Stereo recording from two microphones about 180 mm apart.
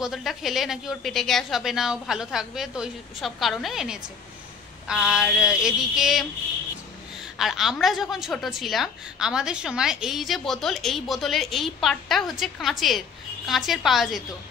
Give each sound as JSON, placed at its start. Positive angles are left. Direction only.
{"t": 0.0, "sound": "a woman's voice", "side_deg": 0}
{"t": 7.3, "sound": "a woman's voice", "side_deg": 0}